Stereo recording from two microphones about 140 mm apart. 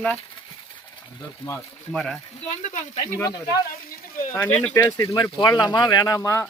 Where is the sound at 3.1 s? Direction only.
25° left (ahead or behind).